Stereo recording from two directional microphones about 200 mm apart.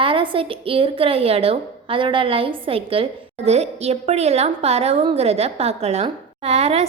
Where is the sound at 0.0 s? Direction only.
25° right (ahead or behind).